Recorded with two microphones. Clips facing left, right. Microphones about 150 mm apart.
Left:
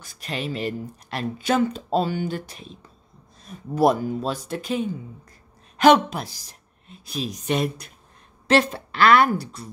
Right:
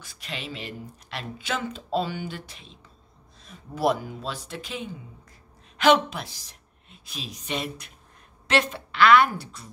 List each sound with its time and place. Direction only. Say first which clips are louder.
0.0 s a woman's voice: left 7 dB; 45° left (ahead or behind)